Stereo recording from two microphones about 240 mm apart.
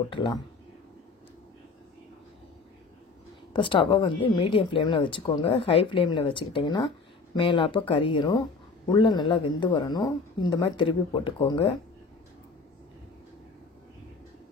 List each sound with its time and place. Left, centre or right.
0.1 s speech: centre
3.5 s speech: left